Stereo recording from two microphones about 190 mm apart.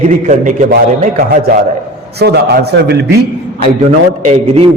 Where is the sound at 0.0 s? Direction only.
35° right (ahead or behind).